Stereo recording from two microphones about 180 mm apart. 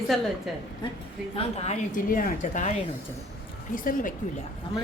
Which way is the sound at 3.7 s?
50° left (ahead or behind).